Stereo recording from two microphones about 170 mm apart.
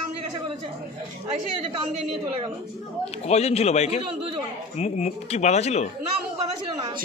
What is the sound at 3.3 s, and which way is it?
Speech, 40° left (ahead or behind).